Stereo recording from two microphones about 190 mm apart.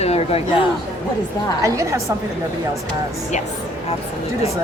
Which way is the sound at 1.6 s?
15° right (ahead or behind).